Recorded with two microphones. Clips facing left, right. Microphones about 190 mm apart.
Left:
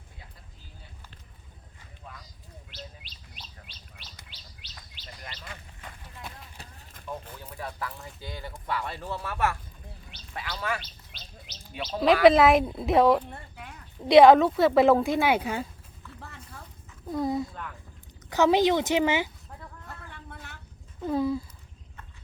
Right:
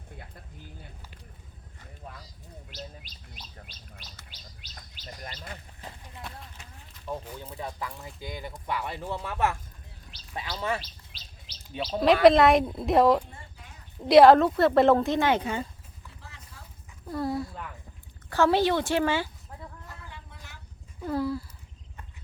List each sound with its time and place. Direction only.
2.6 s bird: 45° right (ahead or behind)
4.3 s chirp: 45° right (ahead or behind)
6.6 s clip-clop: 35° left (ahead or behind)
7.4 s speech: 20° right (ahead or behind)
10.6 s speech: 25° right (ahead or behind)
11.4 s bird: 30° right (ahead or behind)
12.2 s speech: centre (ahead or behind)
13.3 s a sound: 60° left (ahead or behind)
14.0 s speech: centre (ahead or behind)
16.2 s a sound: 55° left (ahead or behind)
17.1 s speech: 20° left (ahead or behind)
20.1 s a sound: 55° left (ahead or behind)
21.0 s a sound: 20° left (ahead or behind)